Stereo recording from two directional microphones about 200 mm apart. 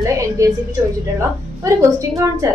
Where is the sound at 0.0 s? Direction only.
15° right (ahead or behind).